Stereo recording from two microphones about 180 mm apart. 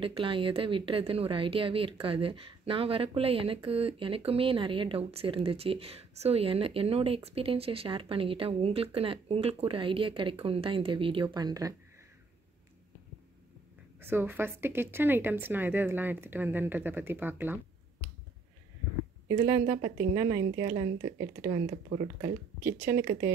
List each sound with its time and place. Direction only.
0.0 s a woman's voice: 30° right (ahead or behind)
14.0 s a woman's voice: 10° right (ahead or behind)
19.2 s a woman's voice: 20° right (ahead or behind)
22.6 s speech: 55° right (ahead or behind)